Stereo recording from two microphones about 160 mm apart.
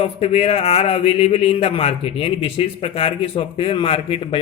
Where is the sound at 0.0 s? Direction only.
40° left (ahead or behind).